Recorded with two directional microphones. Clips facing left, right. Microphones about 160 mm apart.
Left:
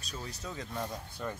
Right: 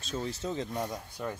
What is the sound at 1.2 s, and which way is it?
Speech, 10° right (ahead or behind).